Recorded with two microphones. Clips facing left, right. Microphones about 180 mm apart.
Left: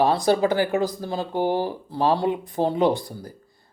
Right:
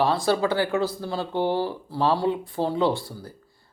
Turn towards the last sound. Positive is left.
turn(degrees=15)  # may be behind; listen again after turning